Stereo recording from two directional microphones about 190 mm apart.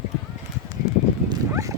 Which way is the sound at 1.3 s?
15° right (ahead or behind).